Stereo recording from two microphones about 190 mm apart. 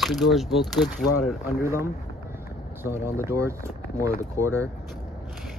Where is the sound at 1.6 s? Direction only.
15° right (ahead or behind).